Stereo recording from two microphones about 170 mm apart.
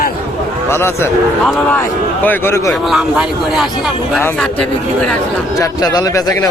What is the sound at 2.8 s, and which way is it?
Speech, 5° right (ahead or behind).